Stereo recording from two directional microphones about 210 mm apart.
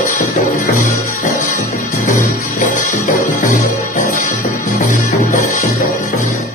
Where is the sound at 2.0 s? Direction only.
40° left (ahead or behind).